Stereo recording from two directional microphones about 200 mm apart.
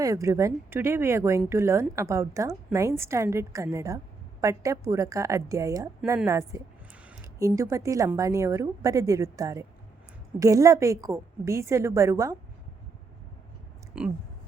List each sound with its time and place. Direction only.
0.0 s a woman's voice: 15° right (ahead or behind)
14.0 s speech: 5° right (ahead or behind)